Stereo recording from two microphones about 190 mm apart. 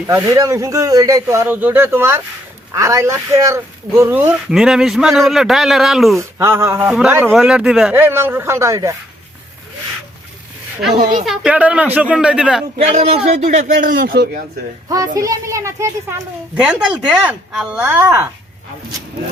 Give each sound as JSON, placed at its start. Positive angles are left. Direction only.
{"t": 0.1, "sound": "a man's voice", "side_deg": -15}
{"t": 6.1, "sound": "a man's voice", "side_deg": -15}
{"t": 11.3, "sound": "speech", "side_deg": -5}
{"t": 12.7, "sound": "a man's voice", "side_deg": -35}
{"t": 14.8, "sound": "a man's voice", "side_deg": -20}
{"t": 16.6, "sound": "speech", "side_deg": -5}
{"t": 17.8, "sound": "a man's voice", "side_deg": -15}